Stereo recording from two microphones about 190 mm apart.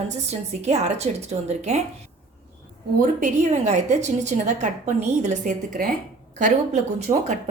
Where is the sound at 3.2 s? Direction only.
40° right (ahead or behind).